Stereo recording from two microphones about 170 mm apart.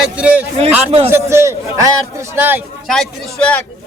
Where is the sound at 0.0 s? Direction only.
5° right (ahead or behind).